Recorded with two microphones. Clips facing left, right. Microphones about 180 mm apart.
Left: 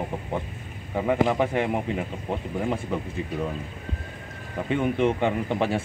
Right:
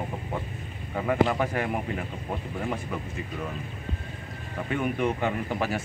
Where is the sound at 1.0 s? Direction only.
15° left (ahead or behind).